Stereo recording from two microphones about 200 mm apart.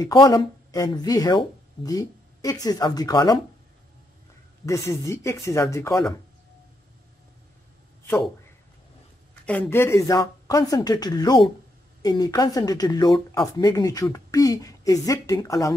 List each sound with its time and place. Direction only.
0.0 s speech: 20° left (ahead or behind)
4.6 s speech: 15° left (ahead or behind)
8.0 s a sound: 10° left (ahead or behind)
9.5 s speech: 10° left (ahead or behind)